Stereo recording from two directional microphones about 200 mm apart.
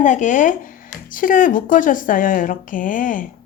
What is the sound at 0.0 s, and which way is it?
Speech, 40° left (ahead or behind).